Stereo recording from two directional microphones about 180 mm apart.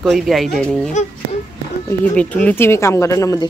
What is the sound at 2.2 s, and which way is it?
Speech, 10° left (ahead or behind).